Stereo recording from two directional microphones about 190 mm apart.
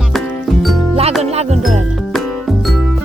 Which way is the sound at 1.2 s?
35° right (ahead or behind).